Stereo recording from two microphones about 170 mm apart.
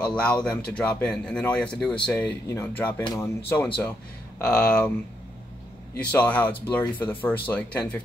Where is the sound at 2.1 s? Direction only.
15° left (ahead or behind).